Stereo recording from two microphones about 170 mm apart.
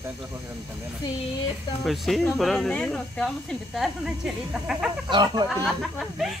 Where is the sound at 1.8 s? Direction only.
Centre (ahead or behind).